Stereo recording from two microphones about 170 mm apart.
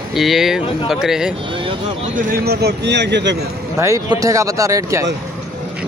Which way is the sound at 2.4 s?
80° right.